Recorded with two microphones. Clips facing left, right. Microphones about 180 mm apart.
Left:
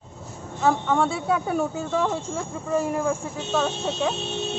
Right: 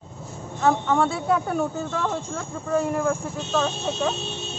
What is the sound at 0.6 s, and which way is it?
Speech, centre (ahead or behind).